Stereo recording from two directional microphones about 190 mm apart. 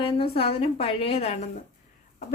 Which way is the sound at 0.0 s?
30° left (ahead or behind).